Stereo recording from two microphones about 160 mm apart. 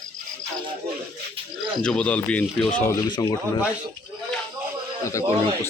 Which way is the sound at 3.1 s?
25° left (ahead or behind).